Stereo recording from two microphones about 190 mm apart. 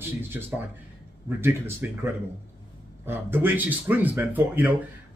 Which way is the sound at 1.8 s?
10° right (ahead or behind).